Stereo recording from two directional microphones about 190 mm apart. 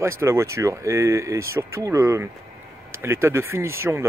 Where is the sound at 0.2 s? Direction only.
15° right (ahead or behind).